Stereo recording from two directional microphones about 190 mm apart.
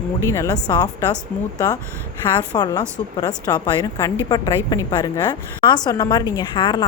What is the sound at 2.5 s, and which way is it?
A woman's voice, 20° left (ahead or behind).